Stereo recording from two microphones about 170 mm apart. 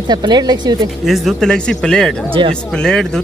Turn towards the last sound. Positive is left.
turn(degrees=5)  # may be behind; listen again after turning